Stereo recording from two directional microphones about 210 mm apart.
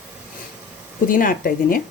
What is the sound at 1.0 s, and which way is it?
Speech, 40° left (ahead or behind).